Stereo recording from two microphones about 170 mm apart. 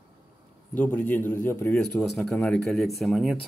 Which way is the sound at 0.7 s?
10° left (ahead or behind).